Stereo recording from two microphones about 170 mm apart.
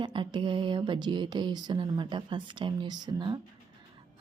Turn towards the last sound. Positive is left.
turn(degrees=-25)  # may be behind; listen again after turning